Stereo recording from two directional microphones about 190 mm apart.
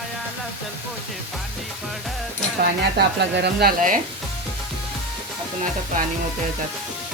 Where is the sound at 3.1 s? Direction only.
60° right (ahead or behind).